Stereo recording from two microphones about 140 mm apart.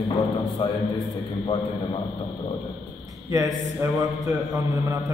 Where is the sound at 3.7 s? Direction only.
25° right (ahead or behind).